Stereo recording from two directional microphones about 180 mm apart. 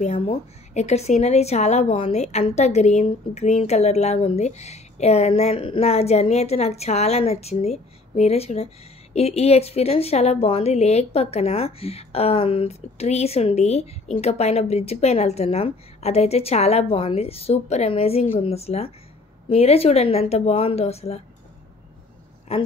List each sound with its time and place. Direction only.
0.0 s a woman's voice: 35° left (ahead or behind)